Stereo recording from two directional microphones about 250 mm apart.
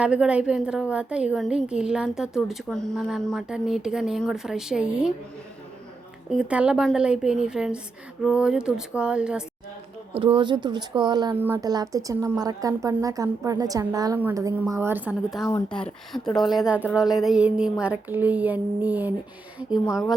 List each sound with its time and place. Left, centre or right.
0.0 s a woman's voice: centre
6.3 s a woman's voice: centre
10.2 s speech: right; by 15.4 s centre
15.4 s a woman's voice: centre